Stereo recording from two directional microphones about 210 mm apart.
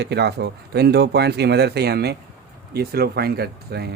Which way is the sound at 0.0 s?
50° right (ahead or behind).